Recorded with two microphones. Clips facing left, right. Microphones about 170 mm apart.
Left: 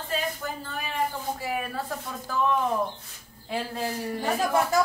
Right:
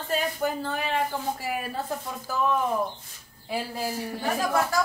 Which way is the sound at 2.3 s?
5° right (ahead or behind).